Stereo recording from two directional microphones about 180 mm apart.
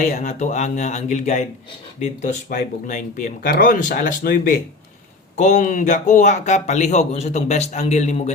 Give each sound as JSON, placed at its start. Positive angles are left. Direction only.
{"t": 0.0, "sound": "speech", "side_deg": 45}